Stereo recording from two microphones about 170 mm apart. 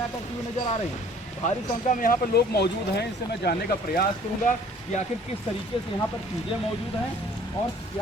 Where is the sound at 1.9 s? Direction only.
45° left (ahead or behind).